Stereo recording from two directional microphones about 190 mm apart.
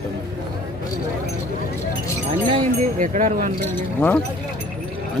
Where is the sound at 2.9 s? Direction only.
45° right (ahead or behind).